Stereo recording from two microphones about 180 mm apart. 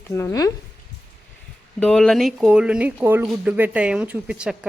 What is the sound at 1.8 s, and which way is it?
Speech, 5° left (ahead or behind).